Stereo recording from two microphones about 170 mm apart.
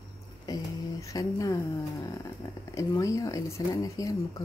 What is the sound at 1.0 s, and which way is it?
Speech, 20° left (ahead or behind).